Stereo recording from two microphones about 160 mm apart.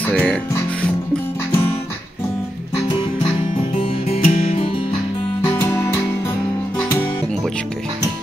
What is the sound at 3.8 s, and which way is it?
Music, 40° left (ahead or behind).